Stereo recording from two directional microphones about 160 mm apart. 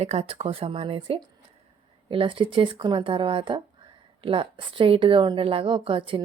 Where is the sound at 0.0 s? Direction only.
40° right (ahead or behind).